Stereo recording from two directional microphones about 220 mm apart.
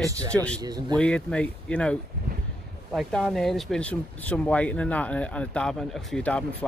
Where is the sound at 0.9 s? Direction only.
5° left (ahead or behind).